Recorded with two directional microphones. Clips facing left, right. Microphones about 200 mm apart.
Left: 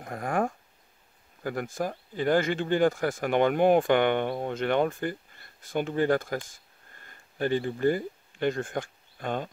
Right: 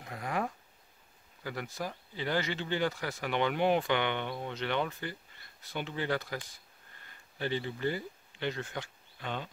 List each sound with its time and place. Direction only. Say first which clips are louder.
0.0 s speech: left 6 dB; 50° left (ahead or behind)